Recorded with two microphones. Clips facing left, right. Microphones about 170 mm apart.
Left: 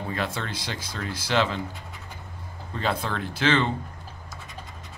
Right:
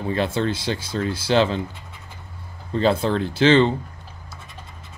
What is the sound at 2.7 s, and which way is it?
Speech, 30° right (ahead or behind).